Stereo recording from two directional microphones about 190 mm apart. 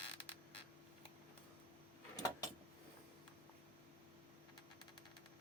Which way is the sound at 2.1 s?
20° left (ahead or behind).